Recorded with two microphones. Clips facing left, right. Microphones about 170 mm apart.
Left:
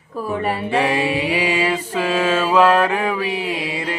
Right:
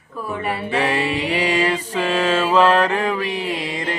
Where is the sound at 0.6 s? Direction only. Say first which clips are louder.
Left 1 dB; 10° left (ahead or behind).